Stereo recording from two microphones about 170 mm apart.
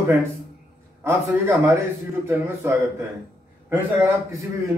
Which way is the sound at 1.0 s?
15° right (ahead or behind).